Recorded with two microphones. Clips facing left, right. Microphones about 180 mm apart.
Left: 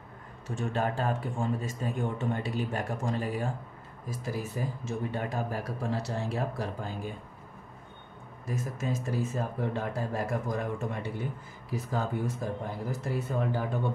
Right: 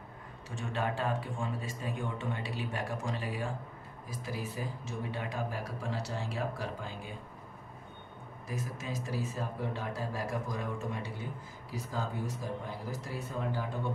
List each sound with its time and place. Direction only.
0.6 s speech: 45° left (ahead or behind)
8.5 s speech: 50° left (ahead or behind)